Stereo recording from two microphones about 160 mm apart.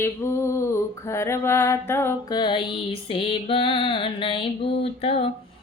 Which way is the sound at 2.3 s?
30° left (ahead or behind).